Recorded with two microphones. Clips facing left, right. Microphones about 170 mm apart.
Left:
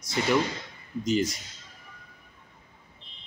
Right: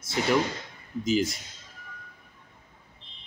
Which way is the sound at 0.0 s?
5° right (ahead or behind).